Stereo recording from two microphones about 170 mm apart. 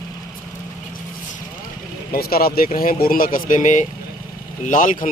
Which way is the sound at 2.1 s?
60° left (ahead or behind).